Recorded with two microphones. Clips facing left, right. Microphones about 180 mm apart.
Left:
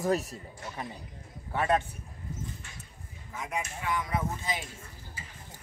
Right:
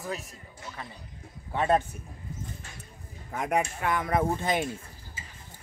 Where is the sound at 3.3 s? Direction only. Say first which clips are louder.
Right 8 dB; 60° right (ahead or behind).